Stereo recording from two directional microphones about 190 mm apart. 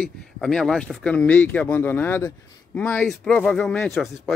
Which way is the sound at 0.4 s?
Centre (ahead or behind).